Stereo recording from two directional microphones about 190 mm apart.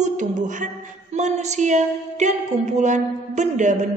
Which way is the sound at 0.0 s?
40° right (ahead or behind).